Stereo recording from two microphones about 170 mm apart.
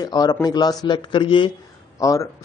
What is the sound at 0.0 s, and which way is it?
A man's voice, 20° left (ahead or behind).